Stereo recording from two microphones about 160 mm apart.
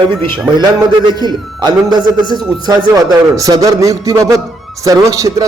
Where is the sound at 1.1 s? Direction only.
25° right (ahead or behind).